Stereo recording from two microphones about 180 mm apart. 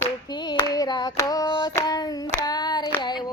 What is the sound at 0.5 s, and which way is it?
Hands, 20° left (ahead or behind).